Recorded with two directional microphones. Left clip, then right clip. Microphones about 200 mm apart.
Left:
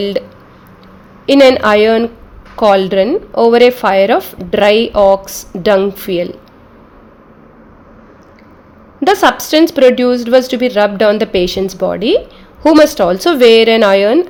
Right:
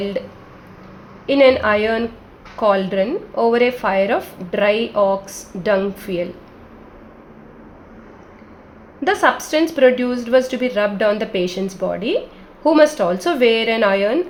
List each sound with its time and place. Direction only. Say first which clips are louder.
1.3 s a woman's voice: left 6 dB; 50° left (ahead or behind)
9.0 s a woman's voice: left 6 dB; 50° left (ahead or behind)